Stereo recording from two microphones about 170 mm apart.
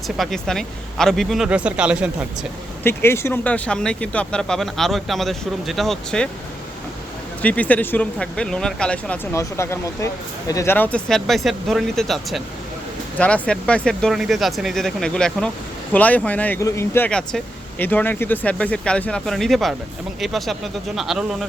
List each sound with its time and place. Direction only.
0.2 s speech: centre (ahead or behind)
2.8 s speech: 15° left (ahead or behind)
7.4 s speech: 10° left (ahead or behind)